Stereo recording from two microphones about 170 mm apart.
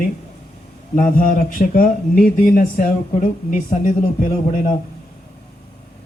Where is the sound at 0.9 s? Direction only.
55° left (ahead or behind).